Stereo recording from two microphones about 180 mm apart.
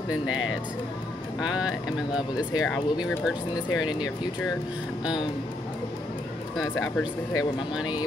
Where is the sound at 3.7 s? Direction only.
25° left (ahead or behind).